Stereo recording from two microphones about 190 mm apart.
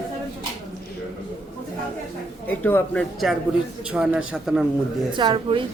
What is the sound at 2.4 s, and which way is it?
A man's voice, 10° left (ahead or behind).